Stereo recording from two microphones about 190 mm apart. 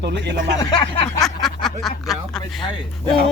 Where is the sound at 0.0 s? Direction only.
65° right (ahead or behind).